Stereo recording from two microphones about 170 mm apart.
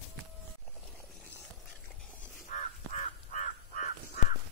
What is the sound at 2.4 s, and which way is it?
Crow, 45° left (ahead or behind).